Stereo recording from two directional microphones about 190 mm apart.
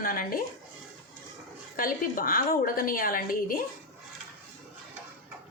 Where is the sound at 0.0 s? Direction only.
50° left (ahead or behind).